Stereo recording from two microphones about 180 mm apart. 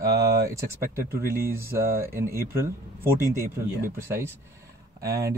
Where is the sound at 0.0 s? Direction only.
15° right (ahead or behind).